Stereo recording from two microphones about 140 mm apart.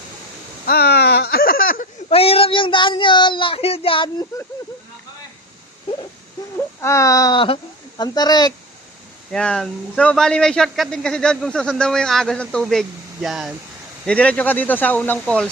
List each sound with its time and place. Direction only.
0.6 s a sound: 90° left
2.0 s speech: 45° left (ahead or behind)
6.8 s speech: 20° left (ahead or behind)
9.3 s speech: 5° left (ahead or behind)
14.0 s speech: 10° left (ahead or behind)